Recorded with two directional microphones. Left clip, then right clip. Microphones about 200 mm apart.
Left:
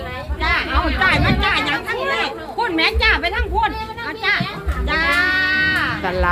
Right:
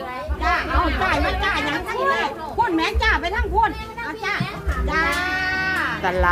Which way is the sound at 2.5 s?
20° left (ahead or behind).